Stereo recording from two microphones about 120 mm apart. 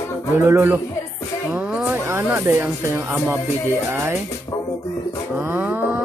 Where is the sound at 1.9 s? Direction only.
20° right (ahead or behind).